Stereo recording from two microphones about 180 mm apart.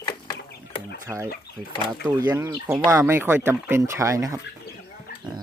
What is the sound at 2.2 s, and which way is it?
Speech, 15° right (ahead or behind).